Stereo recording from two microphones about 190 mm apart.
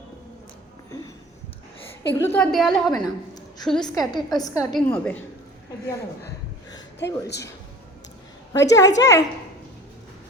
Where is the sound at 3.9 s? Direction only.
20° left (ahead or behind).